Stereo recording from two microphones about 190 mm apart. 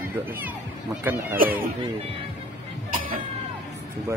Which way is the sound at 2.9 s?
45° right (ahead or behind).